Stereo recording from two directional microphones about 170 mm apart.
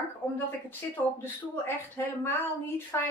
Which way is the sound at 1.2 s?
15° left (ahead or behind).